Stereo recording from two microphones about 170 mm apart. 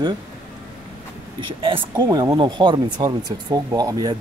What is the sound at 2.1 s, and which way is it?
Speech, 20° right (ahead or behind).